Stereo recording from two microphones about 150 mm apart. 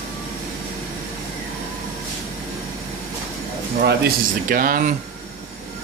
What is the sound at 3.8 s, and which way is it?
Speech, 80° right.